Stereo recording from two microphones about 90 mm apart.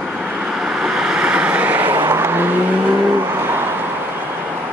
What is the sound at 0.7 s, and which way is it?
Vehicle, 10° right (ahead or behind).